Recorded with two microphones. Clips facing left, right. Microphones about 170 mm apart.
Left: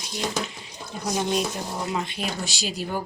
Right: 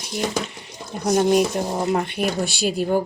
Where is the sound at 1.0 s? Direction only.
55° right (ahead or behind).